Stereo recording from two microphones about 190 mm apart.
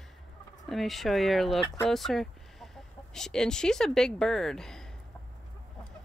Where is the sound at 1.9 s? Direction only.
Centre (ahead or behind).